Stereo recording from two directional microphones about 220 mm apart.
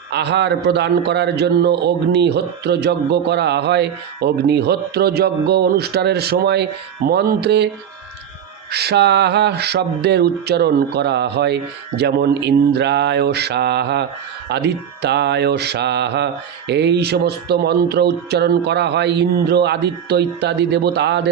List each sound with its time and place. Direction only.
0.1 s mantra: 50° right (ahead or behind)
8.7 s mantra: 45° right (ahead or behind)